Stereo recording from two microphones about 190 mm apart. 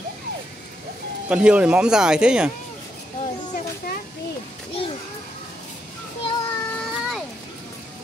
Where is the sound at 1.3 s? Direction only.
5° right (ahead or behind).